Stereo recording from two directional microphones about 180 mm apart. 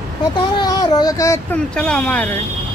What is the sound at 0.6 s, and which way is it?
Speech, 20° left (ahead or behind).